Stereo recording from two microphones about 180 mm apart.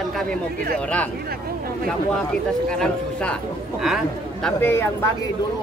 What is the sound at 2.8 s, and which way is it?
Speech, 5° left (ahead or behind).